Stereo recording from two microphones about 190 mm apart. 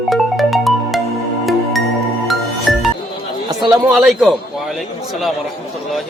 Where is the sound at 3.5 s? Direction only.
20° right (ahead or behind).